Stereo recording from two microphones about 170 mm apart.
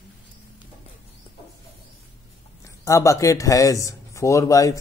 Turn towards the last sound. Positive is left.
turn(degrees=20)  # may be behind; listen again after turning